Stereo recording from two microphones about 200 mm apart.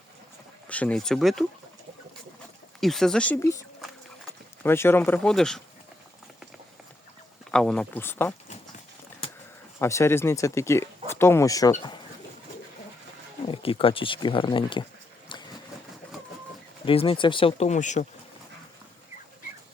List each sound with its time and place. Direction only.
0.7 s speech: 5° left (ahead or behind)
2.8 s speech: centre (ahead or behind)
7.5 s speech: 5° left (ahead or behind)
9.7 s speech: 15° left (ahead or behind)
13.5 s speech: 25° left (ahead or behind)
15.3 s vehicle: 25° left (ahead or behind)
16.8 s speech: 25° left (ahead or behind)